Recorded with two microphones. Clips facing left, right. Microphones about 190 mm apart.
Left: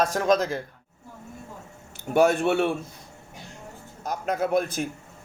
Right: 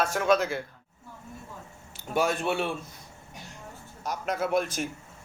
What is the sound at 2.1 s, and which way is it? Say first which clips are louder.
Speech: left 7 dB; 55° left (ahead or behind).